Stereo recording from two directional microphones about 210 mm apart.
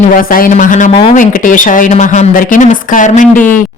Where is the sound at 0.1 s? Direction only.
40° left (ahead or behind).